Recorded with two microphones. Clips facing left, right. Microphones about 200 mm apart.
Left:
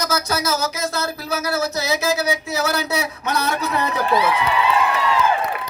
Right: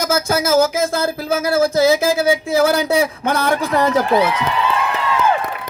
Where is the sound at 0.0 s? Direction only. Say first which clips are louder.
Right 5 dB; 50° right (ahead or behind).